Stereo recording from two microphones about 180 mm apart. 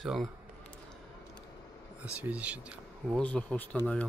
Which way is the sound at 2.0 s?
5° right (ahead or behind).